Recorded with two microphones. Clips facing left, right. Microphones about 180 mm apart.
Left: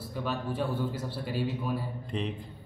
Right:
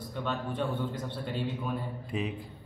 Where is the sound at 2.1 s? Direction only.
5° right (ahead or behind).